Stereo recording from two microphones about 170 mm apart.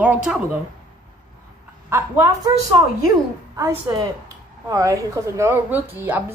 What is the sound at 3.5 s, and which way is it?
A woman's voice, 20° right (ahead or behind).